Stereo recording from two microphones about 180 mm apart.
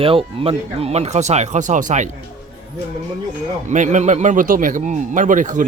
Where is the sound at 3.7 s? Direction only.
40° right (ahead or behind).